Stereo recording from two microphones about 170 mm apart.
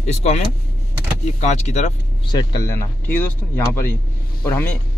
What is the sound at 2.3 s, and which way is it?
Speech, 25° left (ahead or behind).